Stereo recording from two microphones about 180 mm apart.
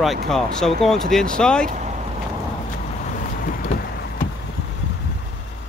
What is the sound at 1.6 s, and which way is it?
Speech, 45° right (ahead or behind).